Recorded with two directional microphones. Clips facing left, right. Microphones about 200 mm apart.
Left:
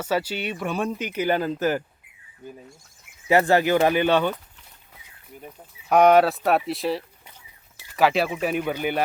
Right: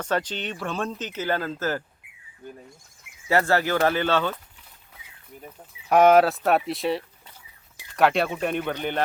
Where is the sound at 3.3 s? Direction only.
15° left (ahead or behind).